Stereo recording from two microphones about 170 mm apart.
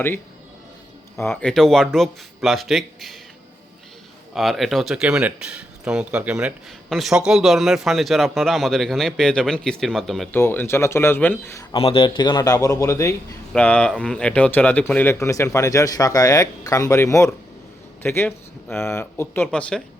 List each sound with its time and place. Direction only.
1.2 s speech: 10° left (ahead or behind)
4.4 s speech: centre (ahead or behind)
10.3 s speech: 10° left (ahead or behind)
11.7 s a man's voice: 35° left (ahead or behind); by 13.1 s 20° left (ahead or behind)
13.5 s speech: 5° left (ahead or behind)